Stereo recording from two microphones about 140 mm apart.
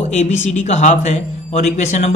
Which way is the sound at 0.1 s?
55° left (ahead or behind).